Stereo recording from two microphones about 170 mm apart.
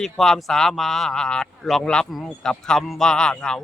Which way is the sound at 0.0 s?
Centre (ahead or behind).